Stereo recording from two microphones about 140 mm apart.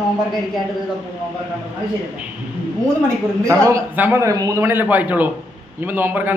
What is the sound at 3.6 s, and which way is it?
A man's voice, 20° right (ahead or behind).